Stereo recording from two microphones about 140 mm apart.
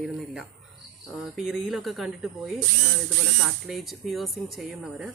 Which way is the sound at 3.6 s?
Centre (ahead or behind).